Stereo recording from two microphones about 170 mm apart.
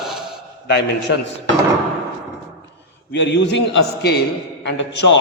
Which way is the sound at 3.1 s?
90° left.